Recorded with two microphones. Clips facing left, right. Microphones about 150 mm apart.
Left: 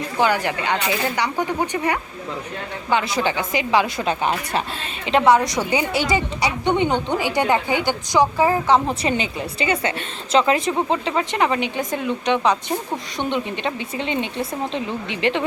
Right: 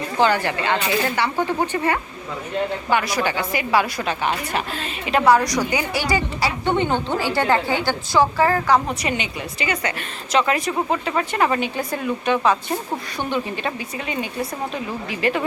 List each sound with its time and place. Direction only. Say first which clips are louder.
0.2 s a woman's voice: right 1 dB; 15° left (ahead or behind)
4.0 s a woman's voice: left 2 dB; 30° left (ahead or behind)